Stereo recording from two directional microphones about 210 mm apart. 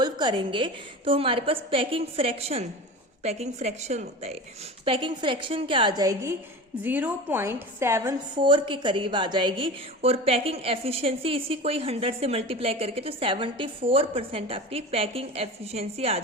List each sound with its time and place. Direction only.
0.0 s a woman's voice: 20° right (ahead or behind)
8.4 s a woman's voice: 25° right (ahead or behind)